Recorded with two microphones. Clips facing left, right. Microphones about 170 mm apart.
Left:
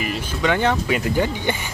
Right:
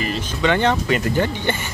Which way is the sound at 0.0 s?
5° left (ahead or behind).